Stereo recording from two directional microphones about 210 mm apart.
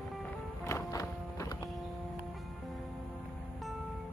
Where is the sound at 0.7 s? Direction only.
15° left (ahead or behind).